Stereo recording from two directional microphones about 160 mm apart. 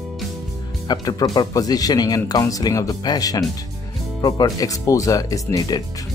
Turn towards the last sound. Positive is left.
turn(degrees=25)  # may be behind; listen again after turning